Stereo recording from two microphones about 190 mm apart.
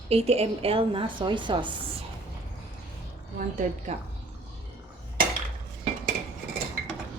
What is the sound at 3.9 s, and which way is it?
Speech, 35° right (ahead or behind).